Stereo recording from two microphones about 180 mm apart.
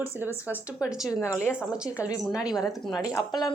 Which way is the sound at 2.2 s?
5° right (ahead or behind).